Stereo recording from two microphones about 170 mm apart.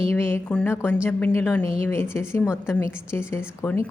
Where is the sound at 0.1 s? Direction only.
15° left (ahead or behind).